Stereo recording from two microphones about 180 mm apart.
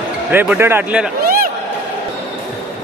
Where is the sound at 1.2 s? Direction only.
55° right (ahead or behind).